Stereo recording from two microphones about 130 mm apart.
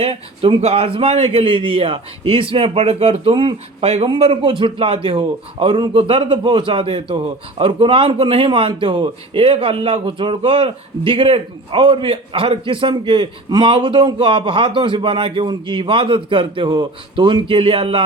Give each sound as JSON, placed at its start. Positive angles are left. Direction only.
{"t": 0.0, "sound": "a man's voice", "side_deg": -45}